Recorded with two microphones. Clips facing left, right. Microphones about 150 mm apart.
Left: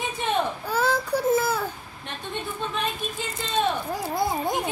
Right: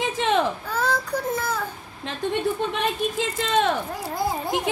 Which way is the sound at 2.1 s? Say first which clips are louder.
Right 9 dB; 90° right.